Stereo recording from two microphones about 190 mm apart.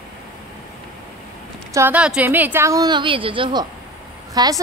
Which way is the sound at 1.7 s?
10° right (ahead or behind).